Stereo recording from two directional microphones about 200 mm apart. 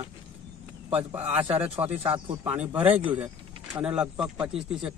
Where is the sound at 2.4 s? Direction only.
10° right (ahead or behind).